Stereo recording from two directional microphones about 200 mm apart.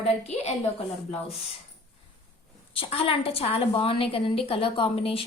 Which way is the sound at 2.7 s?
30° left (ahead or behind).